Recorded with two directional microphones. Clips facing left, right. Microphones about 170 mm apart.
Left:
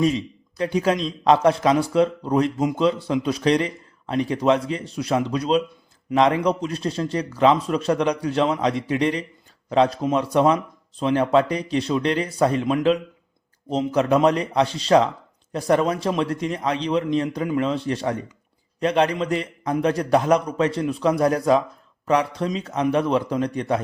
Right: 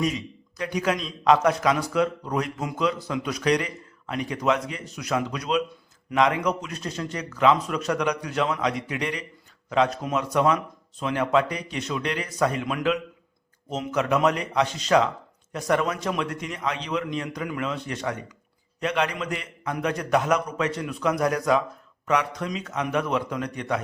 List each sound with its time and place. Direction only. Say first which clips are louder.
0.0 s a man's voice: left 6 dB; 30° left (ahead or behind)